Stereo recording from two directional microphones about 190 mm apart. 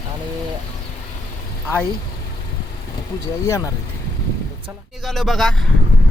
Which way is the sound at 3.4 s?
15° left (ahead or behind).